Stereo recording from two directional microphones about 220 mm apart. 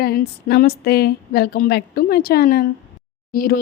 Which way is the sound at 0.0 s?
45° left (ahead or behind).